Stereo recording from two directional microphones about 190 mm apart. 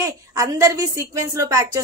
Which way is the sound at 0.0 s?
20° right (ahead or behind).